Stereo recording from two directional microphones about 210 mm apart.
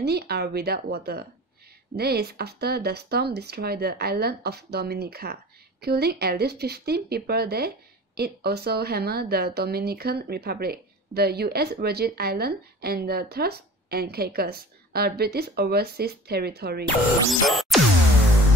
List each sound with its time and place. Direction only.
0.0 s a woman's voice: 50° right (ahead or behind)
17.3 s music: centre (ahead or behind)